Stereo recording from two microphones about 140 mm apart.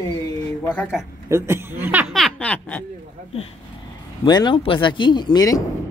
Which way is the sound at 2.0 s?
Centre (ahead or behind).